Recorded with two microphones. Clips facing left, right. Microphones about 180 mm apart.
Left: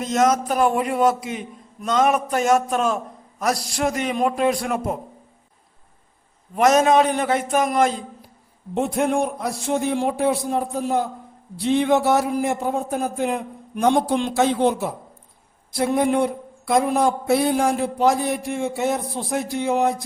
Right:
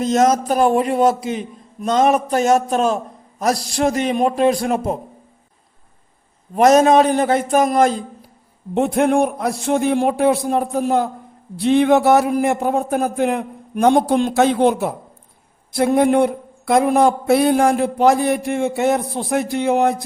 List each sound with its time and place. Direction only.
0.0 s a man's voice: 30° right (ahead or behind)
6.6 s a man's voice: 35° right (ahead or behind)
8.7 s speech: 65° right (ahead or behind); by 14.4 s 50° right (ahead or behind)
14.4 s speech: 65° right (ahead or behind)